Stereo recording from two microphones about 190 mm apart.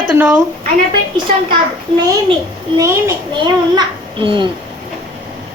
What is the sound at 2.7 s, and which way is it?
A child's voice, 15° right (ahead or behind).